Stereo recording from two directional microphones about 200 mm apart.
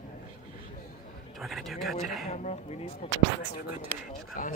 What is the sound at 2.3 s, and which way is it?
Speech, 35° left (ahead or behind).